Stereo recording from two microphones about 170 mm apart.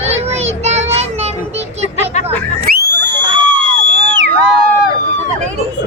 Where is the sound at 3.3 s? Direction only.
30° right (ahead or behind).